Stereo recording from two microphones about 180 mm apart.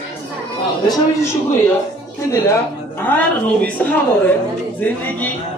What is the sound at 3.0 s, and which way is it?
A woman's voice, 10° left (ahead or behind).